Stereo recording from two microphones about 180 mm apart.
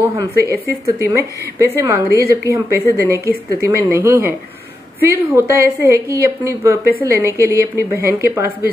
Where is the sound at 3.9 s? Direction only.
15° right (ahead or behind).